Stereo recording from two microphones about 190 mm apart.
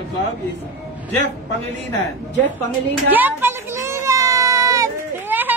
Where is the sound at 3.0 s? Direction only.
10° right (ahead or behind).